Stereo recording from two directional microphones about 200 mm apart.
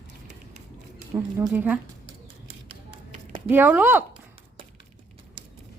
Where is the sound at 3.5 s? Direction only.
10° right (ahead or behind).